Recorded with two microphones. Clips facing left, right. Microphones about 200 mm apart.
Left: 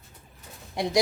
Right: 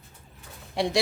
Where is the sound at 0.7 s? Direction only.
25° right (ahead or behind).